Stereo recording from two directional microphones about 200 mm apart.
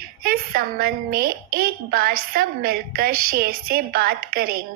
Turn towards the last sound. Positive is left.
turn(degrees=-45)  # may be behind; listen again after turning